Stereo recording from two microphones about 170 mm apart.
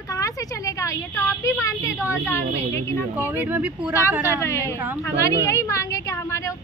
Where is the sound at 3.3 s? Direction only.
10° right (ahead or behind).